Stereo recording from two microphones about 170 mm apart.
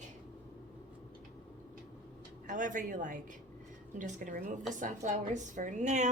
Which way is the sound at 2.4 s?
50° right (ahead or behind).